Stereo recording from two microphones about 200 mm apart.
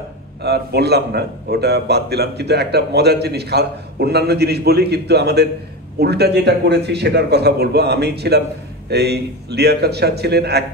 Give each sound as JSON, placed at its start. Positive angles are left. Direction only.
{"t": 0.4, "sound": "a man's voice", "side_deg": -55}